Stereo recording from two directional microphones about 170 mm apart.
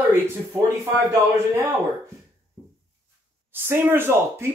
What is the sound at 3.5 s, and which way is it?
Speech, 15° right (ahead or behind).